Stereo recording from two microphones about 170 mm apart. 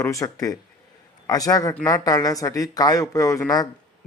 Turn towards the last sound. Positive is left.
turn(degrees=20)  # may be behind; listen again after turning